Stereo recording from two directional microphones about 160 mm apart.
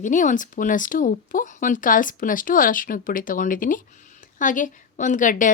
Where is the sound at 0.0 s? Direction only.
55° left (ahead or behind).